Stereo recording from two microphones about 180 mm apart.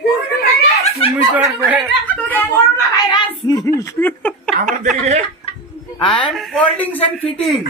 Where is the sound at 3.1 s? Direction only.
25° left (ahead or behind); by 4.7 s 5° left (ahead or behind).